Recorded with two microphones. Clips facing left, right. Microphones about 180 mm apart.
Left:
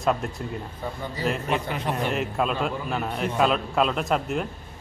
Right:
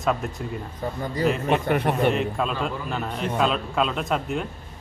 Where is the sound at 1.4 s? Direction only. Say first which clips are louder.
Right 5 dB; 55° right (ahead or behind).